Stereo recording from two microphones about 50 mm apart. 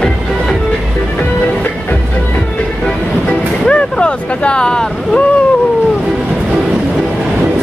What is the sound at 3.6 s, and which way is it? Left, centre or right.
Vehicle, left.